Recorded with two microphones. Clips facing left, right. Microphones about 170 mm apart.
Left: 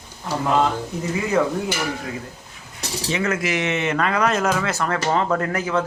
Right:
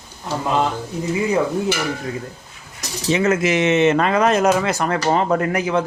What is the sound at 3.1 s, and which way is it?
Speech, 20° right (ahead or behind).